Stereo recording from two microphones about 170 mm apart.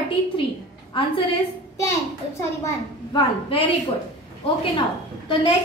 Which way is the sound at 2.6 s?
25° left (ahead or behind).